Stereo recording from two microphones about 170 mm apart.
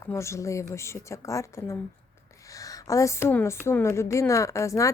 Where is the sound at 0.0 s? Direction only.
15° left (ahead or behind).